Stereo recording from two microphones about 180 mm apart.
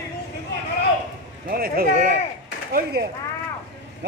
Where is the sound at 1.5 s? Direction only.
55° right (ahead or behind).